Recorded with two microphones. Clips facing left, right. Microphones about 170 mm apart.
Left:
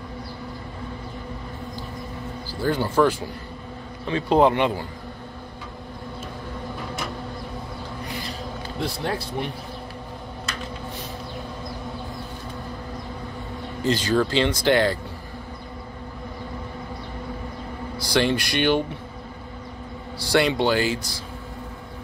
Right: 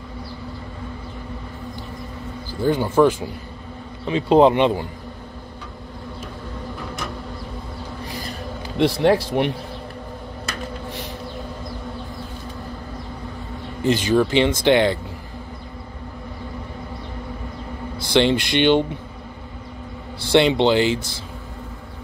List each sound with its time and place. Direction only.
2.6 s speech: 20° right (ahead or behind)
8.7 s speech: 85° right
13.8 s speech: 20° right (ahead or behind)
17.9 s speech: 20° right (ahead or behind)
20.2 s speech: 25° right (ahead or behind)